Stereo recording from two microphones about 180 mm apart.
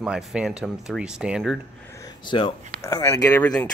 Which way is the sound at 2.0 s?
25° left (ahead or behind).